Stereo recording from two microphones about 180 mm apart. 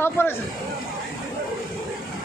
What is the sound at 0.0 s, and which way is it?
Speech, 15° left (ahead or behind).